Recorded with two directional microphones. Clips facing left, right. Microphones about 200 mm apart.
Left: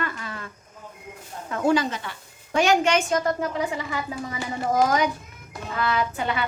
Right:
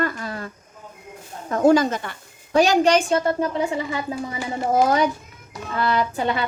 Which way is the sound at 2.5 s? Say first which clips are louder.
Right 4 dB; 35° right (ahead or behind).